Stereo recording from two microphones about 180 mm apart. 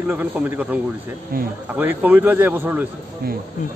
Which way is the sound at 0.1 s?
10° right (ahead or behind).